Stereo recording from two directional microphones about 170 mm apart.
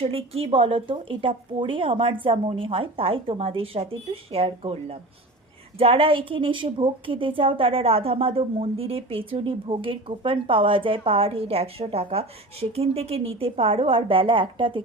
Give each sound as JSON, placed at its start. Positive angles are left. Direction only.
{"t": 0.0, "sound": "a woman's voice", "side_deg": -35}